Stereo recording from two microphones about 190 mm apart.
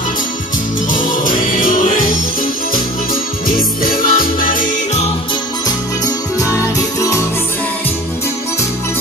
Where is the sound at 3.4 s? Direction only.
50° left (ahead or behind).